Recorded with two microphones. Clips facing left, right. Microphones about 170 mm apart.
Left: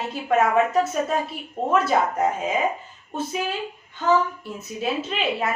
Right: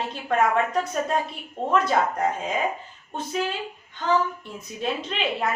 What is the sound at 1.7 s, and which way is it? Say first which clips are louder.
Speech: left 1 dB; 5° left (ahead or behind).